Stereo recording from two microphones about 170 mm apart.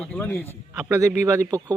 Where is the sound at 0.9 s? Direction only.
15° right (ahead or behind).